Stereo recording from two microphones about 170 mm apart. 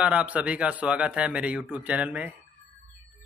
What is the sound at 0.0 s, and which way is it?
Speech, 10° right (ahead or behind).